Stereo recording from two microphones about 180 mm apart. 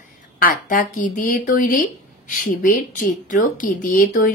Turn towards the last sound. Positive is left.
turn(degrees=50)  # may be behind; listen again after turning